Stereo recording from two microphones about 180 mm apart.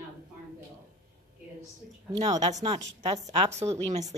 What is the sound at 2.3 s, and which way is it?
A woman's voice, 40° right (ahead or behind).